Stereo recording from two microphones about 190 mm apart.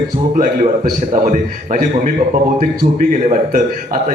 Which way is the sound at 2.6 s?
45° right (ahead or behind).